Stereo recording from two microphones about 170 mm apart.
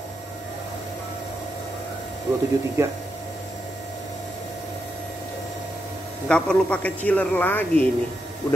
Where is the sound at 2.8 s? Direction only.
20° right (ahead or behind).